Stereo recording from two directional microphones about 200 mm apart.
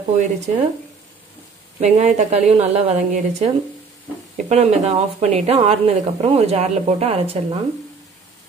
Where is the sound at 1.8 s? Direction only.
35° right (ahead or behind).